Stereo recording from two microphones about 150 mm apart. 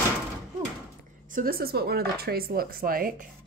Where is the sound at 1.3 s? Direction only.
75° right (ahead or behind).